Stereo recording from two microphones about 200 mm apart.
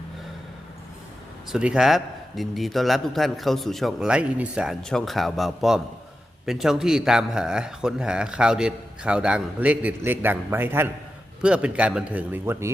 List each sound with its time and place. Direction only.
1.5 s a man's voice: 5° right (ahead or behind)